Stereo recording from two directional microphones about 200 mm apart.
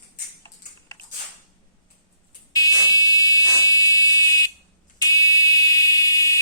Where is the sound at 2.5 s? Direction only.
20° left (ahead or behind).